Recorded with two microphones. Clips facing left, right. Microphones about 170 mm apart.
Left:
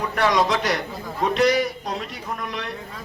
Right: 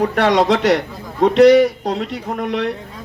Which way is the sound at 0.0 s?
65° right (ahead or behind).